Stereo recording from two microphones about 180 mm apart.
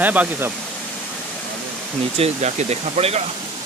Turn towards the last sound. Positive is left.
turn(degrees=-35)  # may be behind; listen again after turning